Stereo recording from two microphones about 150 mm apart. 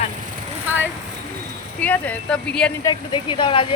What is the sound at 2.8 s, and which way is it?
Speech, 30° left (ahead or behind).